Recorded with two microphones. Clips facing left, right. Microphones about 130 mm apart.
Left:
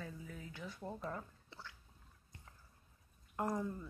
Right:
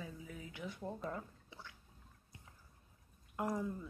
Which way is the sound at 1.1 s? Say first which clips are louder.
Right 1 dB; 15° right (ahead or behind).